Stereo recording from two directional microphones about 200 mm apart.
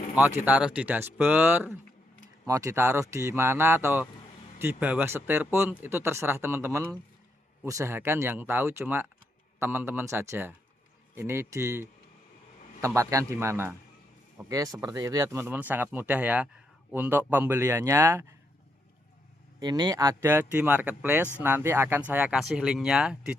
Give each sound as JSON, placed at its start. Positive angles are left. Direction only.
{"t": 0.2, "sound": "speech", "side_deg": -10}
{"t": 19.5, "sound": "speech", "side_deg": -20}